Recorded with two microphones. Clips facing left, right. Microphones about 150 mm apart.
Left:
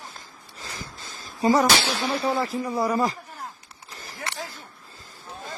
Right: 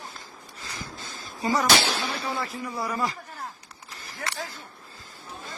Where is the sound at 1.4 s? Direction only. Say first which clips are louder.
Left 4 dB; 35° left (ahead or behind).